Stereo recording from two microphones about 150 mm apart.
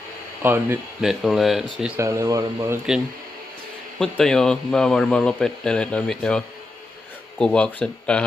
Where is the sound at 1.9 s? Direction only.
20° right (ahead or behind).